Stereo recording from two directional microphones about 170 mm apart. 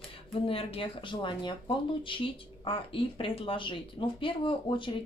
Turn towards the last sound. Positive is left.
turn(degrees=30)  # may be behind; listen again after turning